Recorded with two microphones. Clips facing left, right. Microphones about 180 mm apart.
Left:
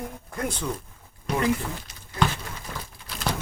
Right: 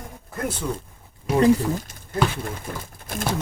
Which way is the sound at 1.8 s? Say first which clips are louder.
Right 12 dB; 50° right (ahead or behind).